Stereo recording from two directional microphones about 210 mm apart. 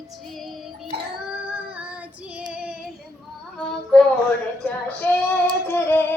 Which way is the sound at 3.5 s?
5° left (ahead or behind).